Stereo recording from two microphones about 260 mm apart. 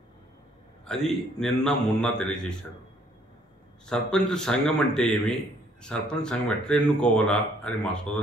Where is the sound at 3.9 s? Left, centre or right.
Centre.